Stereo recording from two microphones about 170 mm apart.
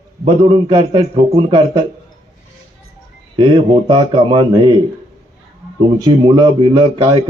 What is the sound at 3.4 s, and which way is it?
A man's voice, 25° right (ahead or behind).